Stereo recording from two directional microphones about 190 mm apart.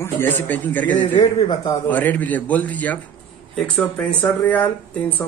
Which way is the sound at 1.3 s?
30° left (ahead or behind).